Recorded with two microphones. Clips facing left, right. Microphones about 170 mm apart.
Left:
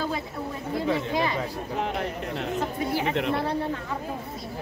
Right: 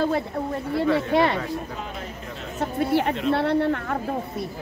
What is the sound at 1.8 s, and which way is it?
Speech, 65° left (ahead or behind).